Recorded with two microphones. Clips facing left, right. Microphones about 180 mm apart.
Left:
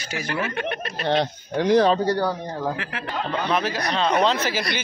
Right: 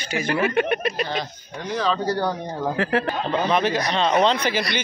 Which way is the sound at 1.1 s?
70° left (ahead or behind).